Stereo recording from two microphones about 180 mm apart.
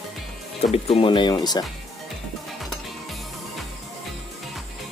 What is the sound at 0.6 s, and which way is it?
Speech, 35° left (ahead or behind).